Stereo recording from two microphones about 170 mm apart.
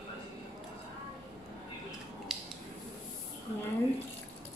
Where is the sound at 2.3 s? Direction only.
Centre (ahead or behind).